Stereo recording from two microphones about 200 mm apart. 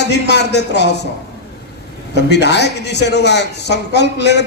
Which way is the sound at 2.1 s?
60° left (ahead or behind).